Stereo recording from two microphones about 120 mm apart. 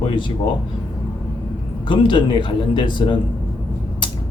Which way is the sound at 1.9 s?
45° left (ahead or behind).